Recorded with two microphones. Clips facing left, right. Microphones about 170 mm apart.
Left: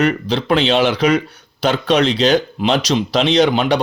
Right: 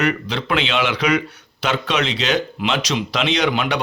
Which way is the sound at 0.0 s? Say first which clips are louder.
Left 4 dB; 35° left (ahead or behind).